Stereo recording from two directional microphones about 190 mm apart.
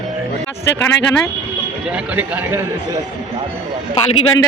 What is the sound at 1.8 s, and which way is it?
Speech, 5° right (ahead or behind).